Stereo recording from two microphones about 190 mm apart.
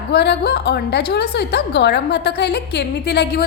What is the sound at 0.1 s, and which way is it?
A woman's voice, 60° left (ahead or behind).